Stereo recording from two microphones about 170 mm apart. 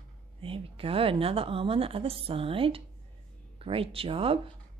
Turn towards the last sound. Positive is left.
turn(degrees=-35)  # may be behind; listen again after turning